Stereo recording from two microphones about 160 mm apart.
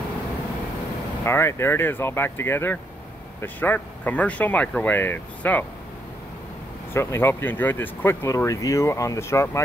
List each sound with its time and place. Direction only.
1.2 s speech: 15° left (ahead or behind)
6.9 s speech: 15° left (ahead or behind)